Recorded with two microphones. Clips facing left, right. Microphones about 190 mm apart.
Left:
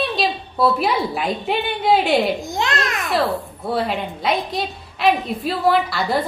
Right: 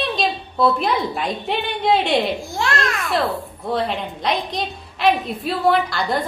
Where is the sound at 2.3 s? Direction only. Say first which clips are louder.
Even; 20° left (ahead or behind).